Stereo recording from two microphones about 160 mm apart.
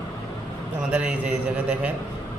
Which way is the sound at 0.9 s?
5° right (ahead or behind).